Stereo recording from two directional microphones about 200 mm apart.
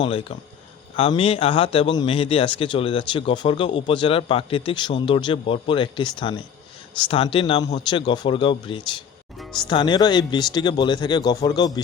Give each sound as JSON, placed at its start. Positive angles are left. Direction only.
{"t": 0.0, "sound": "speech", "side_deg": 25}